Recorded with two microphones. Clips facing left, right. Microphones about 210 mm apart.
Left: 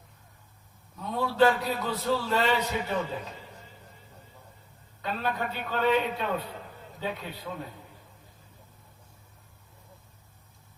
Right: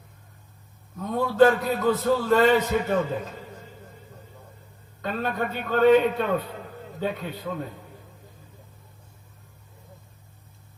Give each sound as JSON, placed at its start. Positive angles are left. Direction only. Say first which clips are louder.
{"t": 0.9, "sound": "a man's voice", "louder": "right 6 dB", "side_deg": -45}
{"t": 5.0, "sound": "a man's voice", "louder": "right 4 dB", "side_deg": -45}